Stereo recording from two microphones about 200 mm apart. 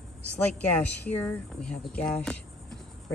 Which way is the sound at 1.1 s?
5° left (ahead or behind).